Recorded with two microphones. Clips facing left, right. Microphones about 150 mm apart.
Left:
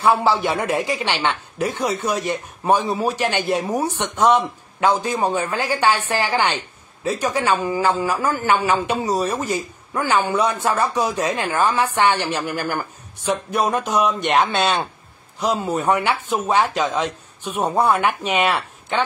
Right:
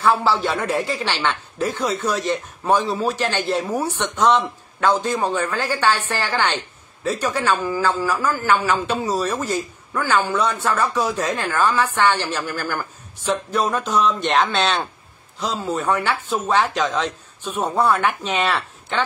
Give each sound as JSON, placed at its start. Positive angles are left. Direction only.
{"t": 0.0, "sound": "a man's voice", "side_deg": 15}
{"t": 1.7, "sound": "speech", "side_deg": 60}
{"t": 2.0, "sound": "a man's voice", "side_deg": 15}